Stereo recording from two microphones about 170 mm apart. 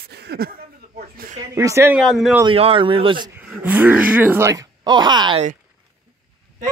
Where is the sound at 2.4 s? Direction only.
30° right (ahead or behind).